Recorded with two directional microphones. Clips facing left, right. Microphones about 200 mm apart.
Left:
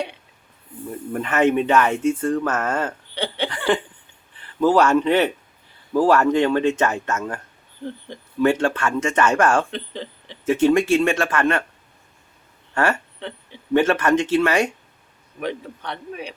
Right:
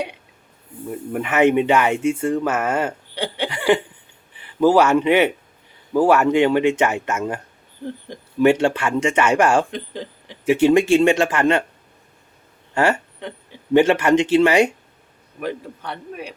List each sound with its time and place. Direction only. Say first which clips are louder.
0.9 s speech: right 1 dB; 10° right (ahead or behind)
12.7 s speech: right 3 dB; 15° right (ahead or behind)
15.4 s speech: even; 5° right (ahead or behind)